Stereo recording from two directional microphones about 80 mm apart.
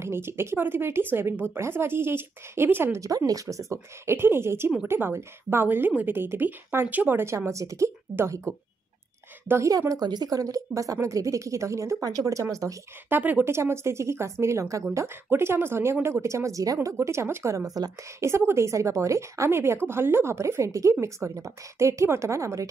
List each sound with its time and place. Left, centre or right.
0.0 s a woman's voice: right
9.7 s a woman's voice: right
13.1 s a woman's voice: right
13.5 s speech: right
18.2 s speech: right